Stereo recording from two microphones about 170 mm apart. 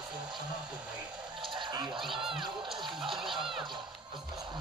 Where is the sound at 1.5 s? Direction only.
25° right (ahead or behind).